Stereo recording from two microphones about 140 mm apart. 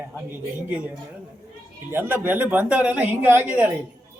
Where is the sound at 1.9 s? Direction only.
15° right (ahead or behind).